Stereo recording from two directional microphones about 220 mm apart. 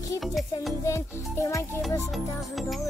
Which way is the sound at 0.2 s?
Centre (ahead or behind).